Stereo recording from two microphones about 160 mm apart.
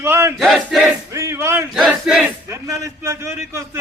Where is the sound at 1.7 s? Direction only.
Centre (ahead or behind).